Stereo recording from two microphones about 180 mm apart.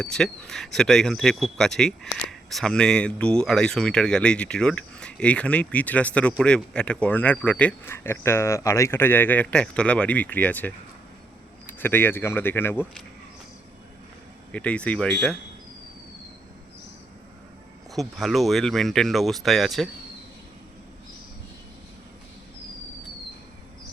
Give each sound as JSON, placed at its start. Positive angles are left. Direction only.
{"t": 0.0, "sound": "speech", "side_deg": 5}
{"t": 14.5, "sound": "speech", "side_deg": 5}
{"t": 17.9, "sound": "speech", "side_deg": 0}